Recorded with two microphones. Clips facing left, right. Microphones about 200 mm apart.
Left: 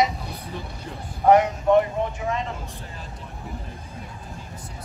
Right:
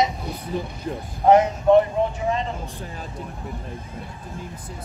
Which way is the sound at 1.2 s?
20° right (ahead or behind).